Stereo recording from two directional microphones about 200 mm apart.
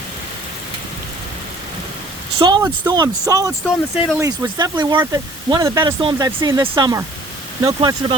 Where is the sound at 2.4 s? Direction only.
20° right (ahead or behind).